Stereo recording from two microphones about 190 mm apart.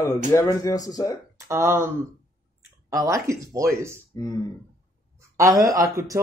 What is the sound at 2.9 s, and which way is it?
Speech, 15° right (ahead or behind).